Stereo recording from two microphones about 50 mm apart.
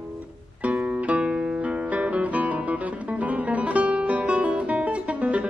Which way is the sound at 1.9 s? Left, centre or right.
Right.